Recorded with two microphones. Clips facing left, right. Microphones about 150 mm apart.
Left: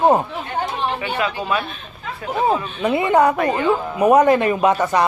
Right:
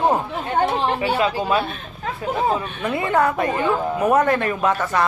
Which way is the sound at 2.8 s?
15° left (ahead or behind).